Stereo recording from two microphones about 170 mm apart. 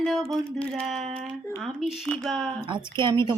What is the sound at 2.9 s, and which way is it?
Speech, 25° right (ahead or behind).